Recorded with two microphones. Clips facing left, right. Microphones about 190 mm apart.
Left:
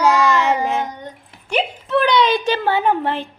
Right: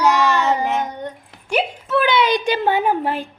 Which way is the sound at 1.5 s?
5° right (ahead or behind).